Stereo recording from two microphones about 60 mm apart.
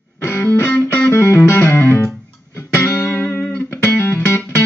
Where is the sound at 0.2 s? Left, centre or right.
Left.